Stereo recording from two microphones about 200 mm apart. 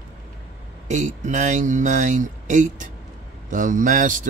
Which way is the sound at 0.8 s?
35° right (ahead or behind).